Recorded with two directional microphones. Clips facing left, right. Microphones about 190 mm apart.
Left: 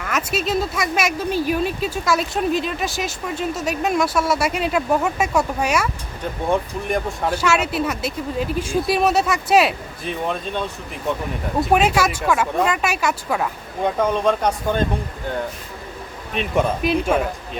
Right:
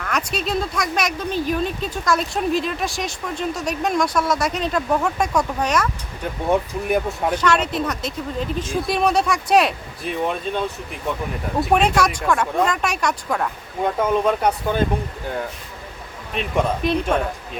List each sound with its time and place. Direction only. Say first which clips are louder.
0.0 s speech: left 1 dB; 5° left (ahead or behind)
6.5 s speech: right 2 dB; 5° right (ahead or behind)
7.3 s speech: left 1 dB; 10° left (ahead or behind)
11.6 s speech: even; 5° left (ahead or behind)
14.1 s speech: right 1 dB; 5° right (ahead or behind)
16.3 s speech: left 1 dB; centre (ahead or behind)